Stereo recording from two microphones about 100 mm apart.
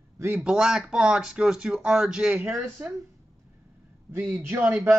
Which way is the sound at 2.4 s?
25° right (ahead or behind).